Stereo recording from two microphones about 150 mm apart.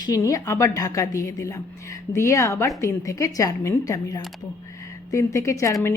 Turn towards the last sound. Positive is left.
turn(degrees=20)  # may be behind; listen again after turning